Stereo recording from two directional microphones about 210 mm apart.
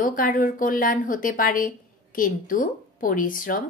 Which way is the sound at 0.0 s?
40° left (ahead or behind).